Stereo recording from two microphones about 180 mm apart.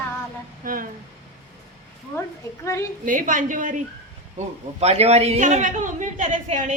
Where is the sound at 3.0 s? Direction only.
45° right (ahead or behind).